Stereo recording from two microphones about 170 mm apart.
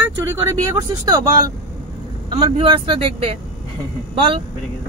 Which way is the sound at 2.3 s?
30° right (ahead or behind).